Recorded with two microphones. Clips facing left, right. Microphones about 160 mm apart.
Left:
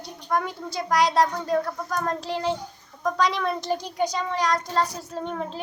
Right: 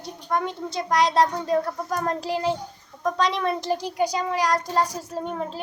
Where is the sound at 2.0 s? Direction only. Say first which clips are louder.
Right 2 dB; 5° right (ahead or behind).